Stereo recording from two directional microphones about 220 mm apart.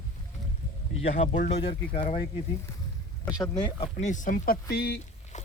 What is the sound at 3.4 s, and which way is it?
Speech, 20° left (ahead or behind).